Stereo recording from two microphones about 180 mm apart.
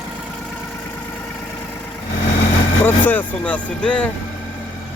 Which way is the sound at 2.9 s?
10° left (ahead or behind).